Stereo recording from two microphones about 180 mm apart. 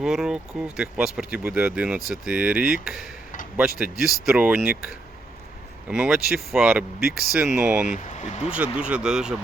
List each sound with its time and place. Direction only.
0.0 s speech: 5° right (ahead or behind)
7.9 s speech: 40° left (ahead or behind)
8.4 s speech: 5° right (ahead or behind)